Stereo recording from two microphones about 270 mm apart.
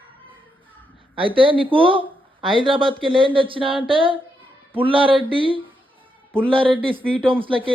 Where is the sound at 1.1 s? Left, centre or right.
Centre.